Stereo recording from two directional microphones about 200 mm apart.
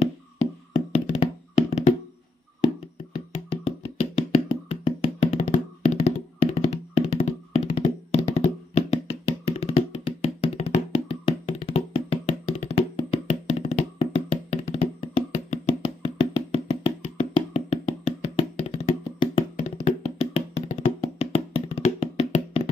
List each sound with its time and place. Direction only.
0.7 s hands: 30° left (ahead or behind)
3.4 s music: 30° left (ahead or behind)